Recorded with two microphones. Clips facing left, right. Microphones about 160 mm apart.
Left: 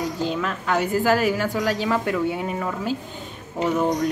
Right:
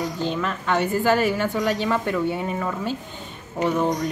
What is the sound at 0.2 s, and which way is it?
A woman's voice, 5° left (ahead or behind).